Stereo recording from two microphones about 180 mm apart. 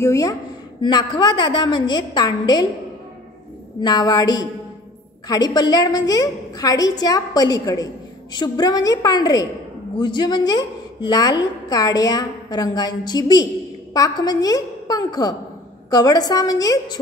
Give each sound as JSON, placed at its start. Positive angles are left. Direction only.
{"t": 0.0, "sound": "a woman's voice", "side_deg": 20}
{"t": 3.8, "sound": "a woman's voice", "side_deg": 25}